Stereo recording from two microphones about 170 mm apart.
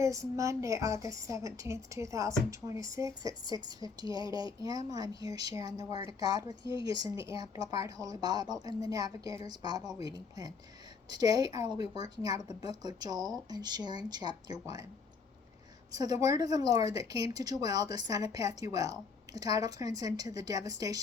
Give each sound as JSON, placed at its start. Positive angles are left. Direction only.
{"t": 0.0, "sound": "speech", "side_deg": -20}
{"t": 15.9, "sound": "speech", "side_deg": -20}